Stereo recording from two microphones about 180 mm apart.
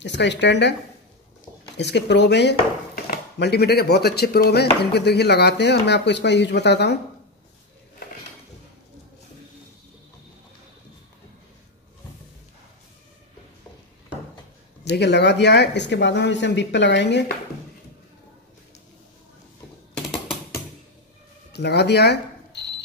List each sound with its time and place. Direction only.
0.0 s speech: 75° left (ahead or behind)
1.8 s speech: 70° left (ahead or behind)
3.0 s speech: 60° left (ahead or behind)
14.9 s speech: 70° left (ahead or behind)
21.5 s speech: 70° left (ahead or behind)